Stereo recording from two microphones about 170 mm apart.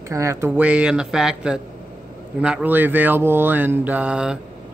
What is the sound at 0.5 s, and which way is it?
Speech, 5° right (ahead or behind).